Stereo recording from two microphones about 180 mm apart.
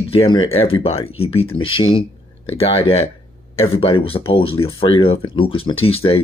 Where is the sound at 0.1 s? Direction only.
30° left (ahead or behind).